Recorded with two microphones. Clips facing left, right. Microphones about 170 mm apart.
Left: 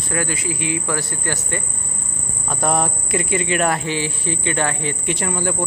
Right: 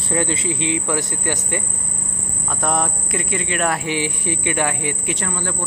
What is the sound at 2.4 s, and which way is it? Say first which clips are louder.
Speech: left 2 dB; 5° left (ahead or behind).